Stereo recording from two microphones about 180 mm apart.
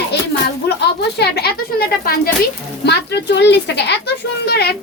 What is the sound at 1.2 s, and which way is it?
Speech, 60° left (ahead or behind).